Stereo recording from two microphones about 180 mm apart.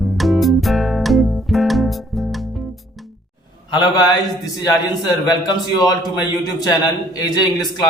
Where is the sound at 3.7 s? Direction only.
25° left (ahead or behind).